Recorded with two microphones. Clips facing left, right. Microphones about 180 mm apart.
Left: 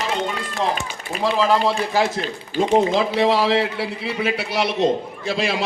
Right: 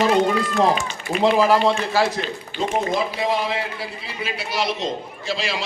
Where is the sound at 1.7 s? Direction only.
20° left (ahead or behind).